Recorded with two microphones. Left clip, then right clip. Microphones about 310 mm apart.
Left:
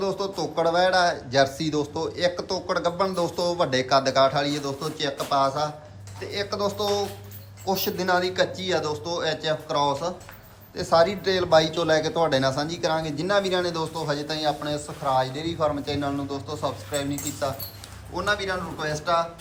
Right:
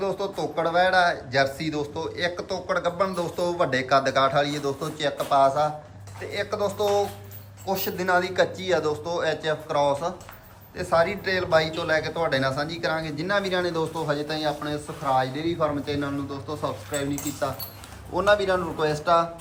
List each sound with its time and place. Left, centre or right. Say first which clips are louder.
0.0 s a man's voice: even; centre